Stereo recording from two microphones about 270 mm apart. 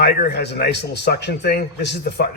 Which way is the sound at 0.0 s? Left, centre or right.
Left.